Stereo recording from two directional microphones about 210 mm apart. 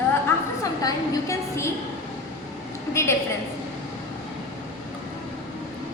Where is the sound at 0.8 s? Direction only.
15° left (ahead or behind).